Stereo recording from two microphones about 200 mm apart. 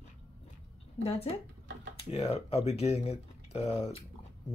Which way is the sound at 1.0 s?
30° left (ahead or behind).